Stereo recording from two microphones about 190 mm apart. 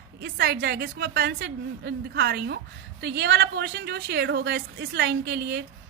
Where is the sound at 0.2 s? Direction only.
55° right (ahead or behind).